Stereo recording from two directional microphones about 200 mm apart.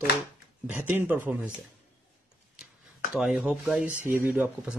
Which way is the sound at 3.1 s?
5° right (ahead or behind).